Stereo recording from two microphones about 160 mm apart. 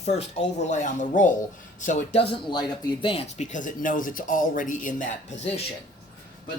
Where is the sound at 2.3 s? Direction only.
30° left (ahead or behind); by 5.0 s 55° left (ahead or behind).